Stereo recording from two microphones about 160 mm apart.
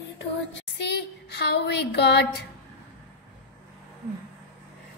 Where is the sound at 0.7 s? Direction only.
90° left.